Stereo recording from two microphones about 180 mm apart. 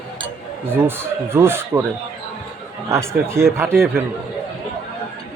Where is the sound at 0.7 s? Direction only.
10° right (ahead or behind).